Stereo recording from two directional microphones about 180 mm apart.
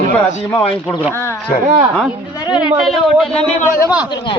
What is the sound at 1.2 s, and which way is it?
Speech, 15° left (ahead or behind).